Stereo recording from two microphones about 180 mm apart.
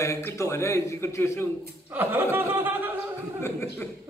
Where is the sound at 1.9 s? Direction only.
10° right (ahead or behind).